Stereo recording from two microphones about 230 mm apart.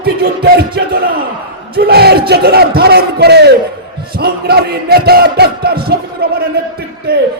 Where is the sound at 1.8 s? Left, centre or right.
Right.